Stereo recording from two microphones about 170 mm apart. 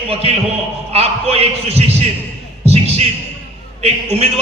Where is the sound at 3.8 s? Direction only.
35° right (ahead or behind).